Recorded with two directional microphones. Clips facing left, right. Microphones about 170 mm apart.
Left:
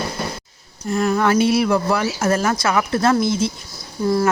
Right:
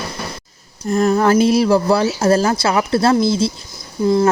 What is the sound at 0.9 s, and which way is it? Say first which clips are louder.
Speech: right 4 dB; 35° right (ahead or behind).